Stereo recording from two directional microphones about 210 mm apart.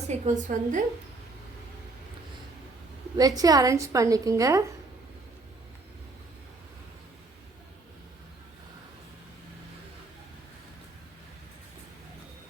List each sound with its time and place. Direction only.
0.1 s a woman's voice: 35° right (ahead or behind)
3.2 s a woman's voice: 15° right (ahead or behind)